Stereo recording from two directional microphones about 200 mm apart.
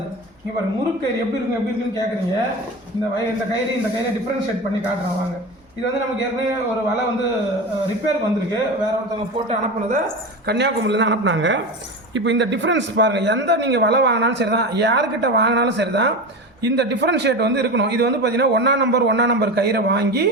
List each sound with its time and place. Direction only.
10.4 s a man's voice: 60° right (ahead or behind)